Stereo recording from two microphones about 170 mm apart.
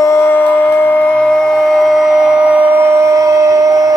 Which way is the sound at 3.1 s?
20° right (ahead or behind).